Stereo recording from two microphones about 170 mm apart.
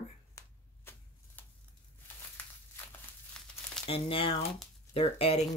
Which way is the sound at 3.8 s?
35° left (ahead or behind).